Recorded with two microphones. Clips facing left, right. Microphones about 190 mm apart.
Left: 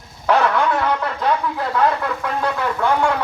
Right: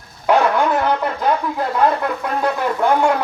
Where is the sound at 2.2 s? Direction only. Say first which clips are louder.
Right 2 dB; 15° right (ahead or behind).